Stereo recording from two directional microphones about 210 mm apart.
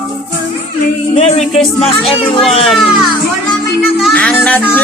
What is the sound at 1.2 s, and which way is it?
Music, 30° left (ahead or behind).